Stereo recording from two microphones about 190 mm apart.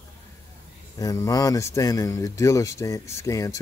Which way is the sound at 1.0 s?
20° left (ahead or behind).